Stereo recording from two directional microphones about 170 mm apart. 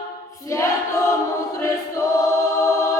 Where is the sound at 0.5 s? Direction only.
15° left (ahead or behind).